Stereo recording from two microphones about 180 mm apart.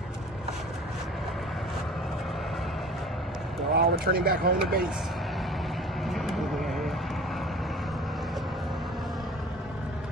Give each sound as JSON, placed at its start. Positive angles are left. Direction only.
{"t": 3.7, "sound": "speech", "side_deg": -60}
{"t": 6.0, "sound": "vehicle", "side_deg": 0}